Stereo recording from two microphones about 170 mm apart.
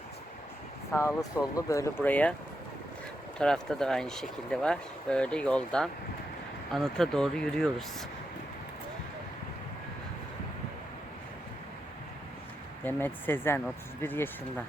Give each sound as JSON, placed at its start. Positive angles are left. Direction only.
{"t": 0.9, "sound": "speech", "side_deg": 20}
{"t": 3.3, "sound": "speech", "side_deg": 5}
{"t": 12.8, "sound": "speech", "side_deg": 10}